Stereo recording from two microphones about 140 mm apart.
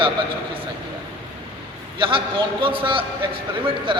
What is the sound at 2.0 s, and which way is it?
A man's voice, 40° right (ahead or behind).